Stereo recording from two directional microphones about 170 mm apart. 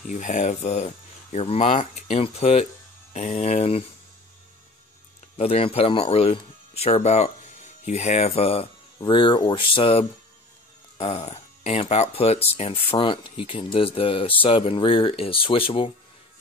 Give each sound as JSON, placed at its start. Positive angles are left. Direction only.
{"t": 0.0, "sound": "speech", "side_deg": 50}
{"t": 5.4, "sound": "speech", "side_deg": 35}